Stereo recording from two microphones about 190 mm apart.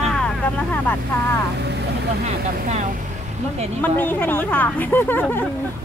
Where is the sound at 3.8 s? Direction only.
10° left (ahead or behind).